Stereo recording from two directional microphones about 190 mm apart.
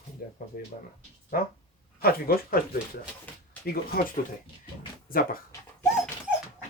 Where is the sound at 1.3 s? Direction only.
50° left (ahead or behind).